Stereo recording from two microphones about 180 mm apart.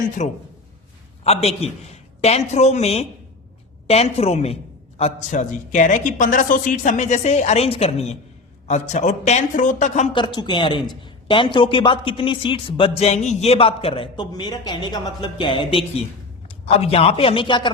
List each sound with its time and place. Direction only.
0.2 s a man's voice: 40° left (ahead or behind)
10.1 s a man's voice: 25° left (ahead or behind)